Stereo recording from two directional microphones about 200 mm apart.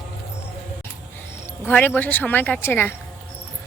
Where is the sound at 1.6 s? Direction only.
10° left (ahead or behind).